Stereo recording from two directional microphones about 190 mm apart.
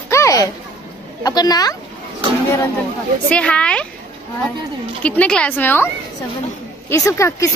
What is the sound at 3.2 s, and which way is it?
Speech, 5° left (ahead or behind).